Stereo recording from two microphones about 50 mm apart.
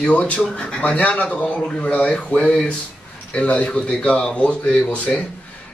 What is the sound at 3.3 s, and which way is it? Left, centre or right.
Speech, left.